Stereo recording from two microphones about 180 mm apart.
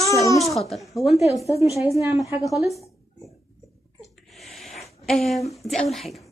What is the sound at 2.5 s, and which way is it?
Speech, centre (ahead or behind).